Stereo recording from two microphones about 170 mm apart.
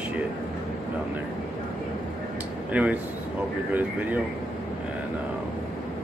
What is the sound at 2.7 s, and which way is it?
Speech, 10° right (ahead or behind).